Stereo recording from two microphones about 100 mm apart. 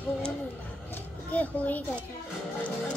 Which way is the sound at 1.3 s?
15° left (ahead or behind).